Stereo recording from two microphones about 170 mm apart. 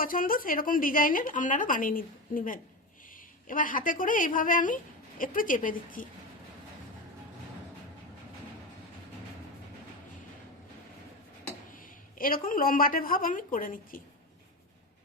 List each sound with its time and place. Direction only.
0.0 s a woman's voice: 55° left (ahead or behind)
12.1 s a woman's voice: 55° left (ahead or behind)